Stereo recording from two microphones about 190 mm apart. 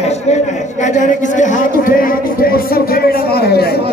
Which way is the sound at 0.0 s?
35° left (ahead or behind).